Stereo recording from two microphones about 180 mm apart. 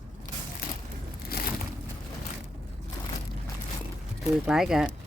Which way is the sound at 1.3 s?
60° left (ahead or behind).